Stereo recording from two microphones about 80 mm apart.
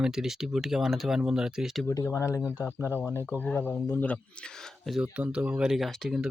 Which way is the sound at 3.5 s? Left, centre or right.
Left.